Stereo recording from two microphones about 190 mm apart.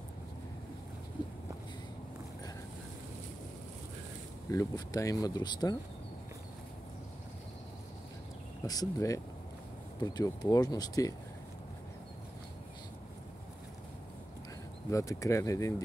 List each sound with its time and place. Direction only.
4.5 s speech: 20° left (ahead or behind)
8.6 s speech: 20° left (ahead or behind)
14.9 s speech: 15° left (ahead or behind)